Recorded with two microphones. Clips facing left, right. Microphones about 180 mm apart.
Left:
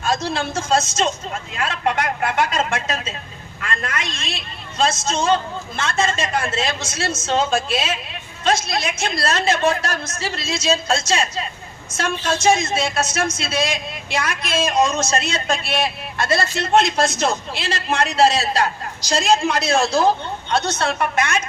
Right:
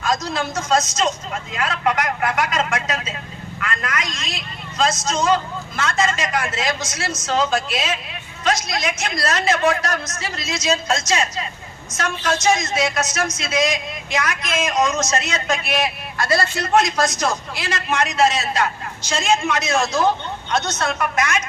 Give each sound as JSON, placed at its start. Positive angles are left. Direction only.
{"t": 0.0, "sound": "speech", "side_deg": 30}